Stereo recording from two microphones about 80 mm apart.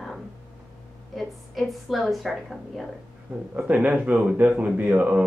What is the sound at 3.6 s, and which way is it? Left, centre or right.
Speech, centre.